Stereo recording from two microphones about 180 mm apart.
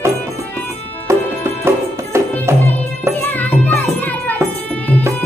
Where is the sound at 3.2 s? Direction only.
10° left (ahead or behind).